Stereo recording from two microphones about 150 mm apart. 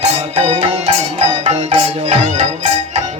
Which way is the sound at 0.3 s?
45° right (ahead or behind).